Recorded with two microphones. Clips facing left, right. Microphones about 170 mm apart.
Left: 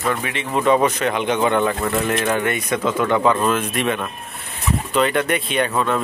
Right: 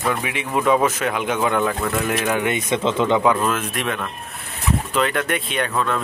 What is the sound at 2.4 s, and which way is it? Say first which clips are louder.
Speech: even; 20° right (ahead or behind).